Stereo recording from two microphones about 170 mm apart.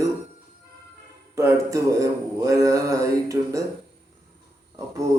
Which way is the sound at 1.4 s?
20° right (ahead or behind).